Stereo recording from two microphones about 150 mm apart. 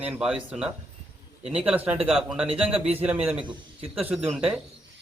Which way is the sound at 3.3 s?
35° right (ahead or behind).